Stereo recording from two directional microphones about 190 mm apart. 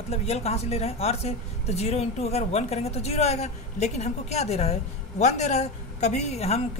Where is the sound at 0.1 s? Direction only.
35° left (ahead or behind).